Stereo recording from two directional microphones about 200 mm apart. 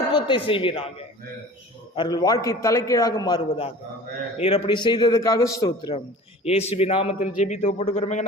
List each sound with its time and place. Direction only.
0.1 s speech: 25° left (ahead or behind)
2.0 s a man's voice: 20° left (ahead or behind)
6.4 s a man's voice: 30° left (ahead or behind)